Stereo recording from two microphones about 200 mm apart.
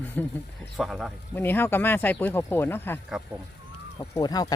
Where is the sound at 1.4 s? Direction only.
10° left (ahead or behind).